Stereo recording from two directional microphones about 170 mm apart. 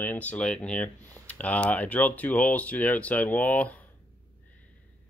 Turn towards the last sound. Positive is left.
turn(degrees=10)  # may be behind; listen again after turning